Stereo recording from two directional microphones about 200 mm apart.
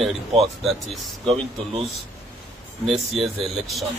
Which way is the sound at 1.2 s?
30° right (ahead or behind).